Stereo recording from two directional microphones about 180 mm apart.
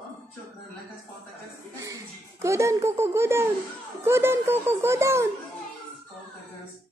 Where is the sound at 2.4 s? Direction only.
15° right (ahead or behind).